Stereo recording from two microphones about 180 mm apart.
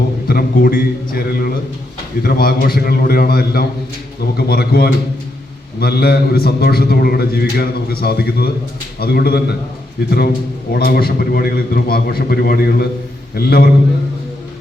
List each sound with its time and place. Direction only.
0.3 s a man's voice: 55° left (ahead or behind)
10.7 s a man's voice: 55° left (ahead or behind)